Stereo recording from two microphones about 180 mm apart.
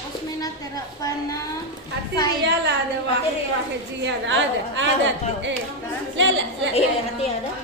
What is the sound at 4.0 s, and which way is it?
A woman's voice, 90° right.